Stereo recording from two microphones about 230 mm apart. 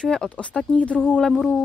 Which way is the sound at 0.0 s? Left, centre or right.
Centre.